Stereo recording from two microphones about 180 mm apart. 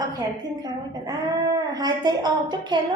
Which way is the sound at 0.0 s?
20° right (ahead or behind).